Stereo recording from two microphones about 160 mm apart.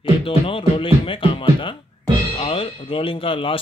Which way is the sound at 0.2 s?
35° left (ahead or behind).